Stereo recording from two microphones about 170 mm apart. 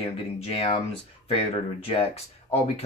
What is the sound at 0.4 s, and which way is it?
Speech, 35° left (ahead or behind).